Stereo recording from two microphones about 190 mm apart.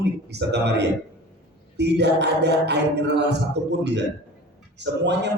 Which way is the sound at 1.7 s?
60° right (ahead or behind).